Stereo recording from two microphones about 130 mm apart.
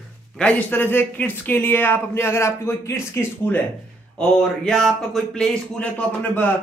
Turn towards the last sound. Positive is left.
turn(degrees=15)  # may be behind; listen again after turning